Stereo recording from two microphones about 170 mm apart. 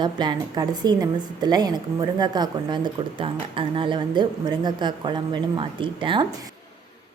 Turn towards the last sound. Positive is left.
turn(degrees=-30)  # may be behind; listen again after turning